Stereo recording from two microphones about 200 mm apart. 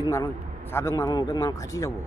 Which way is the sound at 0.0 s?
15° left (ahead or behind).